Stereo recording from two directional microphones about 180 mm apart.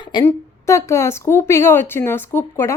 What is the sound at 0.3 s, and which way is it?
A woman's voice, 15° left (ahead or behind).